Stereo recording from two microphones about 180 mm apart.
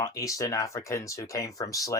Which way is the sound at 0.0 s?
20° left (ahead or behind).